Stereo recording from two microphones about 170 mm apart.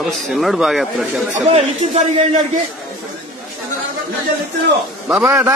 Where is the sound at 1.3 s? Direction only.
40° right (ahead or behind).